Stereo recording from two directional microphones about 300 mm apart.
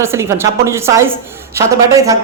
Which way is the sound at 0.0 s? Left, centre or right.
Centre.